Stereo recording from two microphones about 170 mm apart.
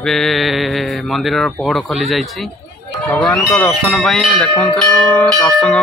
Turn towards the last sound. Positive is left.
turn(degrees=5)  # may be behind; listen again after turning